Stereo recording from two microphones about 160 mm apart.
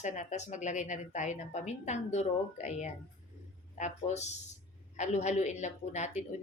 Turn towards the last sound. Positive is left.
turn(degrees=45)  # may be behind; listen again after turning